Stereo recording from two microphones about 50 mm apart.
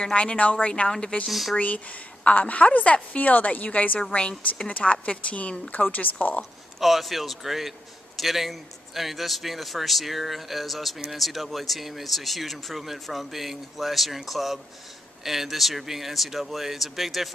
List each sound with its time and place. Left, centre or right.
0.0 s speech: left
1.3 s speech: centre
1.6 s a woman's voice: left
4.1 s speech: centre
6.8 s speech: centre